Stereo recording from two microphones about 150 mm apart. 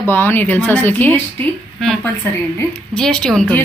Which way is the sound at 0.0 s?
15° left (ahead or behind).